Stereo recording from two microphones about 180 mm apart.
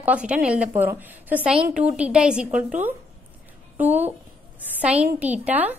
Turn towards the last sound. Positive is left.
turn(degrees=-10)  # may be behind; listen again after turning